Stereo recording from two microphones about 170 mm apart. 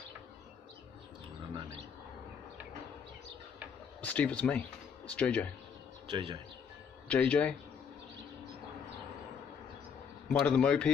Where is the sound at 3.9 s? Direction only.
10° left (ahead or behind).